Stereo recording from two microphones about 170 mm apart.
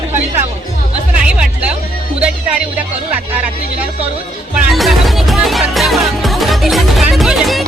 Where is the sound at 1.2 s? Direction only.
5° right (ahead or behind).